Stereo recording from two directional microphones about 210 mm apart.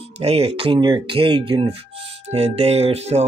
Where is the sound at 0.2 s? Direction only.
30° right (ahead or behind).